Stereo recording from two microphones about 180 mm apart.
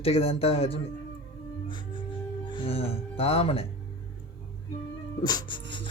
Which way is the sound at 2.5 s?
30° left (ahead or behind).